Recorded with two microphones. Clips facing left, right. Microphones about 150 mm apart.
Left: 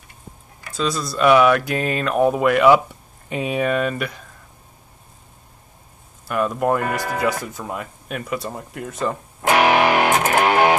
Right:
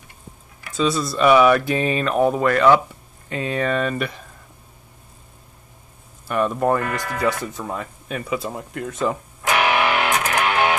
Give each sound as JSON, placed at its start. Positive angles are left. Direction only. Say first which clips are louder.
{"t": 0.7, "sound": "speech", "louder": "right 2 dB", "side_deg": 0}
{"t": 6.2, "sound": "speech", "louder": "even", "side_deg": 0}
{"t": 9.4, "sound": "music", "louder": "left 4 dB", "side_deg": 40}